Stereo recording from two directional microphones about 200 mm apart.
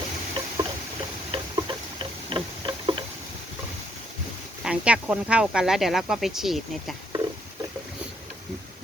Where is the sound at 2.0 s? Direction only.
25° right (ahead or behind).